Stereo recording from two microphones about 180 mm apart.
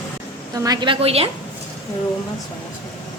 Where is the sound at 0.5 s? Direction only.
20° right (ahead or behind).